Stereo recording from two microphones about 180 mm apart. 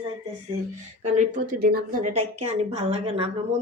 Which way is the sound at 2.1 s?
35° right (ahead or behind).